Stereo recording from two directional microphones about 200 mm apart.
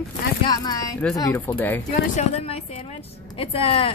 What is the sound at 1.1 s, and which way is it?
Speech, 20° left (ahead or behind).